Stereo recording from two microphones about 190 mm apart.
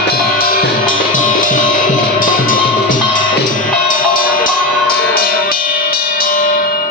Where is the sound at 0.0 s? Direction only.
55° left (ahead or behind).